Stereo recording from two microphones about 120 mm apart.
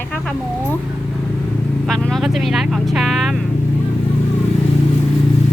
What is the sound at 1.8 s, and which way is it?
Vehicle, 5° left (ahead or behind).